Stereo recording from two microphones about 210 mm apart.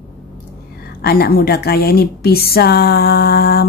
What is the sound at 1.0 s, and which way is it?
A woman's voice, 45° left (ahead or behind).